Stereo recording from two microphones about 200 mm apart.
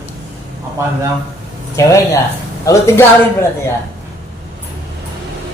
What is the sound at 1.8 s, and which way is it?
A woman's voice, 15° left (ahead or behind).